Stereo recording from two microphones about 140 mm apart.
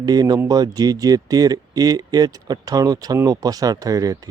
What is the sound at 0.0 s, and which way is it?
Speech, 30° right (ahead or behind).